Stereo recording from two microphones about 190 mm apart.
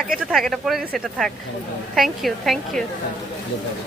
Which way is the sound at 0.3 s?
Centre (ahead or behind).